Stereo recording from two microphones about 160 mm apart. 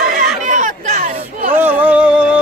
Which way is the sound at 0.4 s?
55° right (ahead or behind).